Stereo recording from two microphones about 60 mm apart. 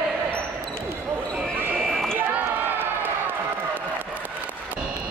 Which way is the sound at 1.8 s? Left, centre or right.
Centre.